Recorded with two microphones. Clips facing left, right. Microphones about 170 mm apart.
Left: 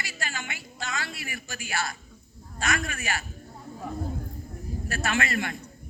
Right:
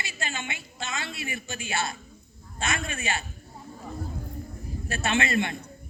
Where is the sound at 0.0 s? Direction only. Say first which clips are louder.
Right 1 dB; 25° right (ahead or behind).